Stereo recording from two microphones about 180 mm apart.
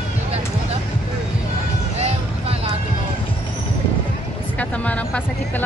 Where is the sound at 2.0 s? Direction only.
35° right (ahead or behind).